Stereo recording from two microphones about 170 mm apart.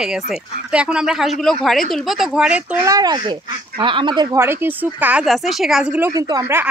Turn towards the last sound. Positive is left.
turn(degrees=-20)  # may be behind; listen again after turning